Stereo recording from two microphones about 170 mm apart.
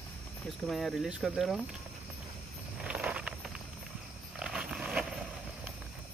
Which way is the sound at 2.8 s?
5° right (ahead or behind).